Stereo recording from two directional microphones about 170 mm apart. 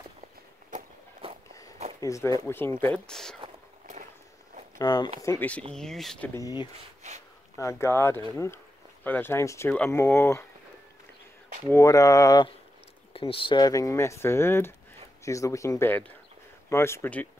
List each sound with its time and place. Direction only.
0.7 s walk: 40° right (ahead or behind)
2.0 s speech: 20° left (ahead or behind)
3.8 s a sound: 45° right (ahead or behind)
4.7 s speech: 25° left (ahead or behind)
5.2 s speech: 15° left (ahead or behind)
6.3 s speech: 20° left (ahead or behind)
11.6 s speech: 20° left (ahead or behind)
13.1 s speech: 35° left (ahead or behind); by 17.3 s 10° left (ahead or behind)